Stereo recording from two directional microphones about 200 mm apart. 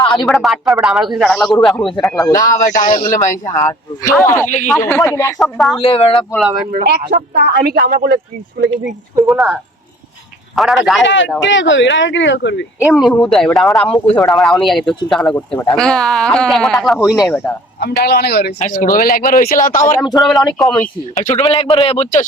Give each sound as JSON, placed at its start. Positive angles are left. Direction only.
{"t": 0.0, "sound": "speech", "side_deg": 20}
{"t": 0.3, "sound": "speech", "side_deg": 0}
{"t": 2.3, "sound": "speech", "side_deg": 40}
{"t": 4.2, "sound": "speech", "side_deg": 15}
{"t": 5.4, "sound": "speech", "side_deg": 0}
{"t": 5.8, "sound": "speech", "side_deg": 30}
{"t": 6.7, "sound": "speech", "side_deg": -45}
{"t": 9.2, "sound": "speech", "side_deg": -5}
{"t": 11.0, "sound": "speech", "side_deg": 65}
{"t": 12.8, "sound": "speech", "side_deg": 0}
{"t": 17.7, "sound": "speech", "side_deg": 55}
{"t": 18.6, "sound": "speech", "side_deg": 40}
{"t": 20.1, "sound": "speech", "side_deg": 0}
{"t": 21.2, "sound": "speech", "side_deg": 35}